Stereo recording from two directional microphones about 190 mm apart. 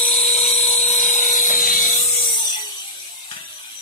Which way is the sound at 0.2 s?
40° left (ahead or behind).